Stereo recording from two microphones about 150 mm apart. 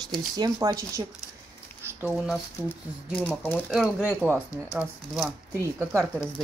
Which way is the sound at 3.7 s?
5° right (ahead or behind).